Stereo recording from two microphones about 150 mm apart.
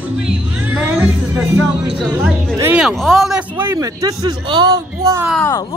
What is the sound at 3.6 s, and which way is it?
A man's voice, 20° right (ahead or behind).